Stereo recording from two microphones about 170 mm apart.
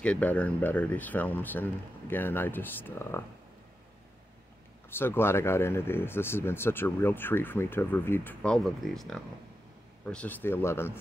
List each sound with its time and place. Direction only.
0.0 s speech: 10° left (ahead or behind)
4.8 s speech: 15° left (ahead or behind)